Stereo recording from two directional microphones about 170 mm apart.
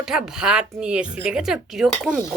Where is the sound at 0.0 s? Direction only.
5° right (ahead or behind).